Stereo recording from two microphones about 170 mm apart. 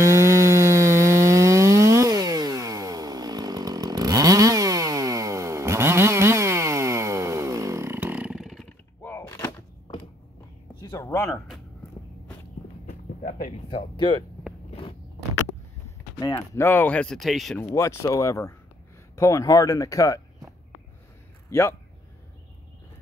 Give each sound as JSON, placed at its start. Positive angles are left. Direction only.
{"t": 0.0, "sound": "chainsaw", "side_deg": -15}
{"t": 10.7, "sound": "a sound", "side_deg": 25}
{"t": 13.3, "sound": "a sound", "side_deg": 35}
{"t": 14.7, "sound": "biting", "side_deg": 35}
{"t": 16.2, "sound": "speech", "side_deg": 20}
{"t": 17.6, "sound": "speech", "side_deg": 15}
{"t": 21.5, "sound": "speech", "side_deg": 15}